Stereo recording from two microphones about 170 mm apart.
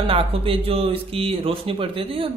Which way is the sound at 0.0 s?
35° right (ahead or behind).